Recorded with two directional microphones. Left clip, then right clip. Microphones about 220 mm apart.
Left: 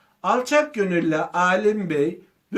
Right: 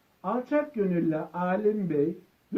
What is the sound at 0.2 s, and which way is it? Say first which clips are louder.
Speech: left 9 dB; 20° left (ahead or behind).